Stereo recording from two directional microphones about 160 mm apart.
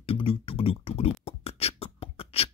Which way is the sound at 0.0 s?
35° left (ahead or behind).